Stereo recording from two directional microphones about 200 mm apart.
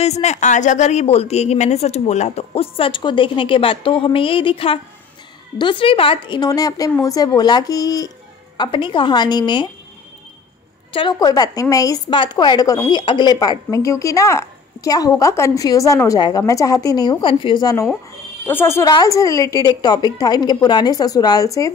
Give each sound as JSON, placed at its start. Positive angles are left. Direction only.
{"t": 0.0, "sound": "a woman's voice", "side_deg": 35}
{"t": 10.9, "sound": "a woman's voice", "side_deg": 25}